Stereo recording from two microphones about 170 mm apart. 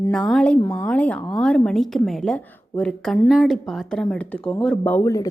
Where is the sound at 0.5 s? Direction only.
20° left (ahead or behind).